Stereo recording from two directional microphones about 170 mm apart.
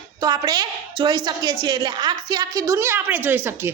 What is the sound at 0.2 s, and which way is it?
A woman's voice, 25° right (ahead or behind).